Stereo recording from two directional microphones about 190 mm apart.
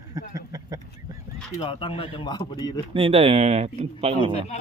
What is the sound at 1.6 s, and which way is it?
Speech, 30° left (ahead or behind).